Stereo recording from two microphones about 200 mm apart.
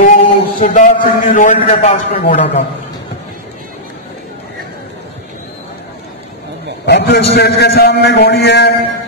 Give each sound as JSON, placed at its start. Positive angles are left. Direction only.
{"t": 0.0, "sound": "a man's voice", "side_deg": 40}
{"t": 6.9, "sound": "a man's voice", "side_deg": 55}